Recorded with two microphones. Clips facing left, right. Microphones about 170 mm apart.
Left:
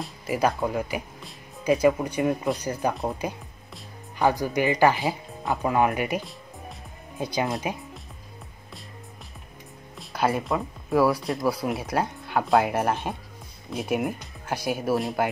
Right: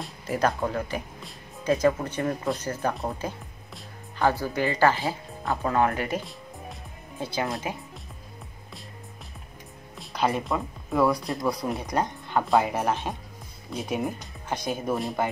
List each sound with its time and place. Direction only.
0.3 s speech: 10° left (ahead or behind)
9.9 s speech: 5° left (ahead or behind)